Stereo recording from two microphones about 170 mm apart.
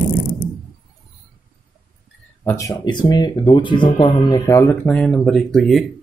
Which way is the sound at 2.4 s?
15° left (ahead or behind).